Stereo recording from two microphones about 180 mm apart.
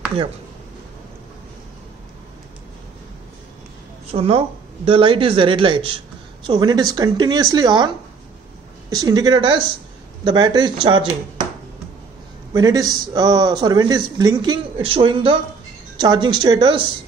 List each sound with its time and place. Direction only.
4.1 s a woman's voice: 35° right (ahead or behind)
8.9 s speech: 20° right (ahead or behind)
12.5 s speech: 20° right (ahead or behind)